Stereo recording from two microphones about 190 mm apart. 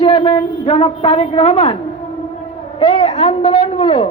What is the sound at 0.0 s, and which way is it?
A woman's voice, 25° left (ahead or behind).